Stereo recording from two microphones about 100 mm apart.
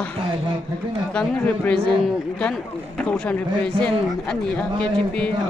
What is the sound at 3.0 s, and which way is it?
A man's voice, 15° left (ahead or behind).